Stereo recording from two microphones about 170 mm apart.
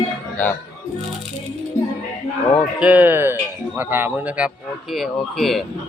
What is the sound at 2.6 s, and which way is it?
Speech, 5° right (ahead or behind).